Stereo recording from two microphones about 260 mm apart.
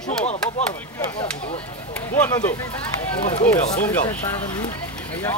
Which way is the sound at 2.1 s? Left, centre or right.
Centre.